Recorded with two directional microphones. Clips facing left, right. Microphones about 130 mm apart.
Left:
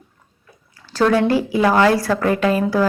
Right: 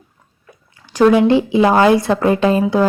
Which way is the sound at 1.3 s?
20° right (ahead or behind).